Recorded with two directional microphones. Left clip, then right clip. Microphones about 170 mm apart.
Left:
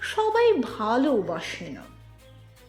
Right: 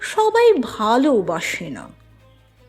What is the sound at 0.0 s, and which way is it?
Speech, 30° right (ahead or behind).